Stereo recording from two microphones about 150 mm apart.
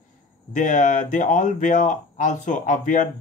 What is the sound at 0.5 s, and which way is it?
Speech, 55° left (ahead or behind).